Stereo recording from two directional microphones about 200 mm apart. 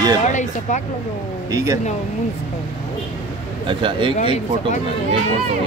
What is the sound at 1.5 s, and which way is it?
Speech, 15° right (ahead or behind).